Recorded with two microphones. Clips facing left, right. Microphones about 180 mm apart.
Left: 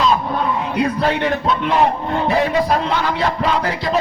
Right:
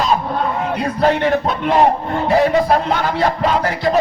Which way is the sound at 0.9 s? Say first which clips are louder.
Right 3 dB; 45° right (ahead or behind).